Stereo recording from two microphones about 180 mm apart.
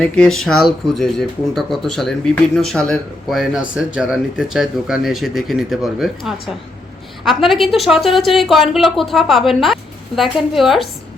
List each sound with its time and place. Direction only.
0.0 s speech: 5° left (ahead or behind)